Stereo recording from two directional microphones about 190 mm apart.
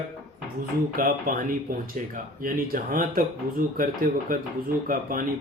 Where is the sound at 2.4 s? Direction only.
45° right (ahead or behind).